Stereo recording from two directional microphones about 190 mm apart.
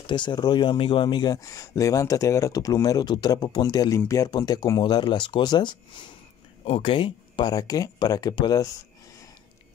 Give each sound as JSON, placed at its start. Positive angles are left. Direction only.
{"t": 0.0, "sound": "speech", "side_deg": 25}